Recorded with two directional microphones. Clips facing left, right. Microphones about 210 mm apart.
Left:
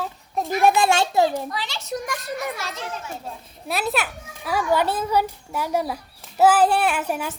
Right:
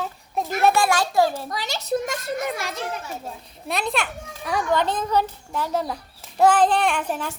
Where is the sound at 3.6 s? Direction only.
5° left (ahead or behind).